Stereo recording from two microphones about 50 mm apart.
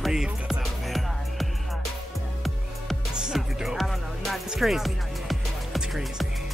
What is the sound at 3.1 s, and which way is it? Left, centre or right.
Music, centre.